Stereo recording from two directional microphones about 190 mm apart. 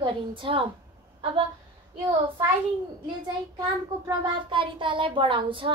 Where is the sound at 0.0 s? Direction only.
25° right (ahead or behind).